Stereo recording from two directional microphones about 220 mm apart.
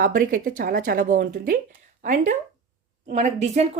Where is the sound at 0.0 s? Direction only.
40° right (ahead or behind).